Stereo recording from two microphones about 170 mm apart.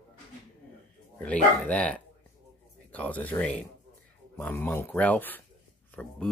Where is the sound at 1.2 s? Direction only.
10° left (ahead or behind).